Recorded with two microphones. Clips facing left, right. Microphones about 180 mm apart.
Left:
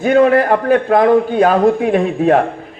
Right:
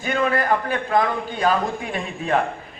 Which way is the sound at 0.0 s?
60° left (ahead or behind).